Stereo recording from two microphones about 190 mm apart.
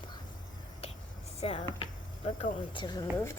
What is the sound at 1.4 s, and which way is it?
Speech, 30° left (ahead or behind).